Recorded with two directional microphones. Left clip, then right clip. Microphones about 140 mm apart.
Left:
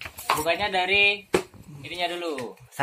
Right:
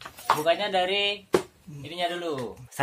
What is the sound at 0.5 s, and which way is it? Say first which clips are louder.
Dishes: left 2 dB; 65° right (ahead or behind).